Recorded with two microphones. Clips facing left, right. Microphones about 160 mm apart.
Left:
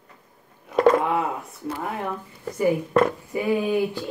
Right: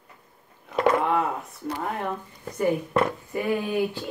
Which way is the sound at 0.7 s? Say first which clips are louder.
Left 4 dB; 45° left (ahead or behind).